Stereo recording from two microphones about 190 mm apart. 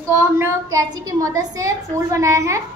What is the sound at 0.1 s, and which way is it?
A woman's voice, 15° right (ahead or behind).